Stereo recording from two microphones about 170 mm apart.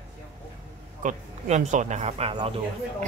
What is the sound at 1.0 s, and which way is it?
Speech, 45° right (ahead or behind).